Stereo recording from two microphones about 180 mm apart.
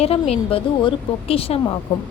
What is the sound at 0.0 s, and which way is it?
Speech, 35° left (ahead or behind).